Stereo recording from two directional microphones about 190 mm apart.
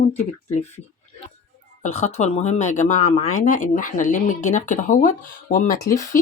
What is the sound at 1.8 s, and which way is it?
Speech, 35° left (ahead or behind).